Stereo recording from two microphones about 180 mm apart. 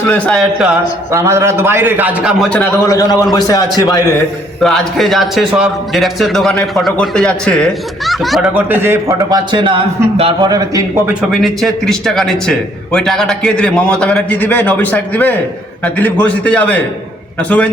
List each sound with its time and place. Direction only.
0.1 s a man's voice: 5° left (ahead or behind)
1.1 s a man's voice: 15° right (ahead or behind)
2.8 s a man's voice: 20° left (ahead or behind)
4.6 s a man's voice: centre (ahead or behind)
8.7 s a man's voice: 10° right (ahead or behind)
11.0 s a man's voice: 5° right (ahead or behind)